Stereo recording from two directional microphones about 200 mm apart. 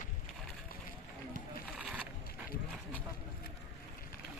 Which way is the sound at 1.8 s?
5° right (ahead or behind).